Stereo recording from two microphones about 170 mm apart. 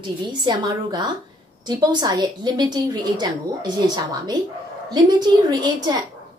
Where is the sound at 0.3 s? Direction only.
25° right (ahead or behind).